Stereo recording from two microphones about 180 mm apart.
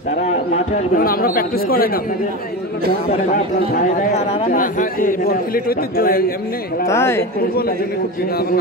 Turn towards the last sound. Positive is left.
turn(degrees=55)  # may be behind; listen again after turning